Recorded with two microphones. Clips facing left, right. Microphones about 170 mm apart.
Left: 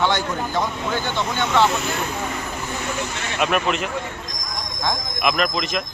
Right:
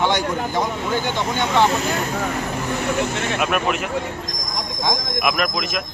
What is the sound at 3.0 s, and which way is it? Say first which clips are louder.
Speech: right 6 dB; 55° right (ahead or behind).